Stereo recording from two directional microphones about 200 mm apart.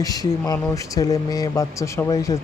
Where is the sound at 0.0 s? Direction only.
20° left (ahead or behind).